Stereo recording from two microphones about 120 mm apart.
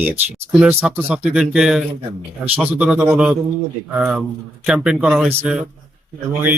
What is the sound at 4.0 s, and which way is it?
Speech, centre (ahead or behind).